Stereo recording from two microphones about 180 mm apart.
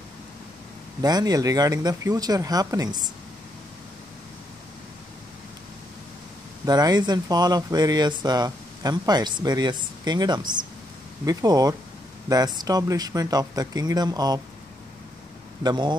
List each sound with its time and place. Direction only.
1.0 s speech: 20° right (ahead or behind)
6.6 s speech: 20° right (ahead or behind)
15.6 s speech: 25° right (ahead or behind)